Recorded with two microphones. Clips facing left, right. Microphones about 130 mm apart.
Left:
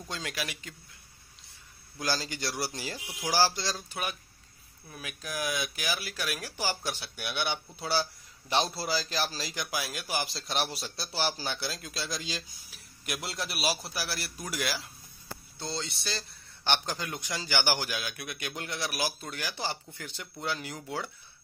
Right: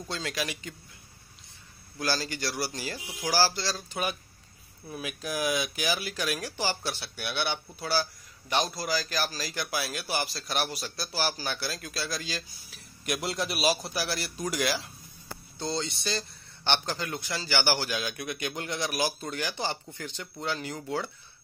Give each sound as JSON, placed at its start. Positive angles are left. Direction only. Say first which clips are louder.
{"t": 0.1, "sound": "speech", "louder": "right 3 dB", "side_deg": 10}
{"t": 2.0, "sound": "a man's voice", "louder": "right 2 dB", "side_deg": 20}
{"t": 3.9, "sound": "a man's voice", "louder": "right 4 dB", "side_deg": -5}
{"t": 13.0, "sound": "a man's voice", "louder": "right 5 dB", "side_deg": 0}